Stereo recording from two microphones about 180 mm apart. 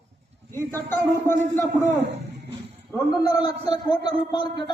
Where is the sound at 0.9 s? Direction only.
10° left (ahead or behind).